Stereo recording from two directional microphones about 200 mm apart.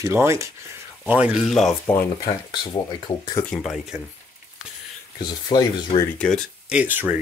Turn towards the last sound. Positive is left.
turn(degrees=-10)  # may be behind; listen again after turning